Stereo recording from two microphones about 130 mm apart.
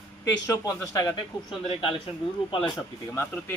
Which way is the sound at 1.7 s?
40° left (ahead or behind).